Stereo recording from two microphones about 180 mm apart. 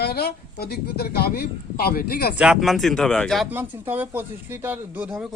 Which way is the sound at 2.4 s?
Centre (ahead or behind).